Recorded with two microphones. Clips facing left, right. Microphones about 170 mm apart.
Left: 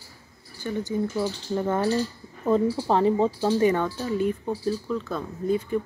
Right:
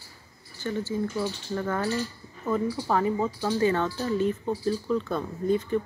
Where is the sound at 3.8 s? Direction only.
5° left (ahead or behind).